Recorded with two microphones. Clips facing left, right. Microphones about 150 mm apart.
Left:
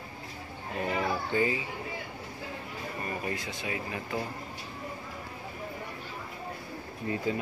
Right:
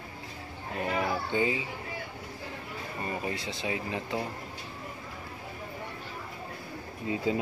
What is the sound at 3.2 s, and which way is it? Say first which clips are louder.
Speech: right 1 dB; 25° right (ahead or behind).